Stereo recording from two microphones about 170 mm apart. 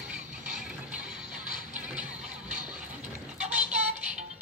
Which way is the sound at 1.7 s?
5° right (ahead or behind).